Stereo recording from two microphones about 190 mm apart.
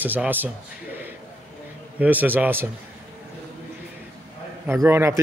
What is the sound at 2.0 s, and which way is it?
Speech, 10° right (ahead or behind).